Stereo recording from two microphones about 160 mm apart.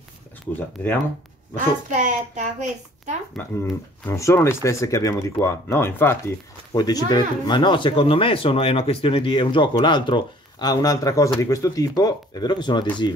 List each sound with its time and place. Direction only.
1.9 s a woman's voice: 50° right (ahead or behind)
3.3 s speech: 15° left (ahead or behind)